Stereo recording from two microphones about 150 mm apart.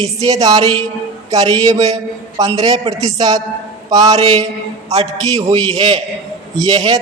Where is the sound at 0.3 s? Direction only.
25° right (ahead or behind).